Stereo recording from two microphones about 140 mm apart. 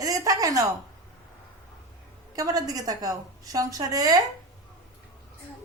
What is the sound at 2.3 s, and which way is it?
A woman's voice, 25° right (ahead or behind).